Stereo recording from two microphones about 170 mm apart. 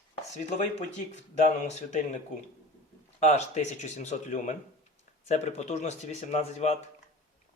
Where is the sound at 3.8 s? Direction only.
40° left (ahead or behind).